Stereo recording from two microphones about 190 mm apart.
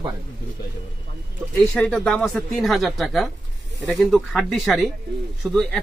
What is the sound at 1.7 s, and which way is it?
A man's voice, 5° left (ahead or behind).